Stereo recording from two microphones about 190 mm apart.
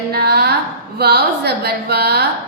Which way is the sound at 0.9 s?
55° right (ahead or behind).